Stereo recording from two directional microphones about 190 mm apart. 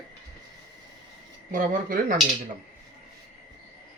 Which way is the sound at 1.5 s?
45° right (ahead or behind).